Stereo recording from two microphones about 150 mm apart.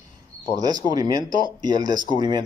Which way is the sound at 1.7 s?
60° left (ahead or behind).